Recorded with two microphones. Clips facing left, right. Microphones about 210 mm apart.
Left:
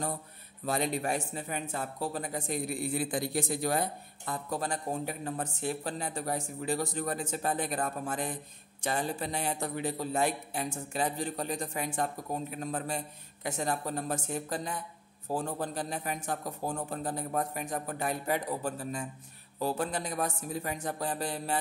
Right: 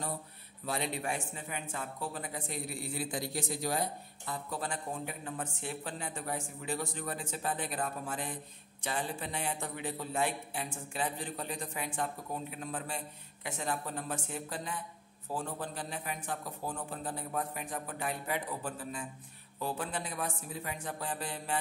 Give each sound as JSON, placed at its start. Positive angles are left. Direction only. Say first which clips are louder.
{"t": 0.7, "sound": "a man's voice", "louder": "left 5 dB", "side_deg": 45}
{"t": 4.3, "sound": "a man's voice", "louder": "left 4 dB", "side_deg": 45}